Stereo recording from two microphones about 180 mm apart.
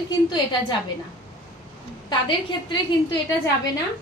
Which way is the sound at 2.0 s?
25° left (ahead or behind).